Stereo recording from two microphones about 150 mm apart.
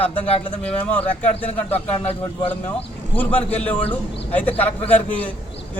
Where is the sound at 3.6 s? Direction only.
10° left (ahead or behind).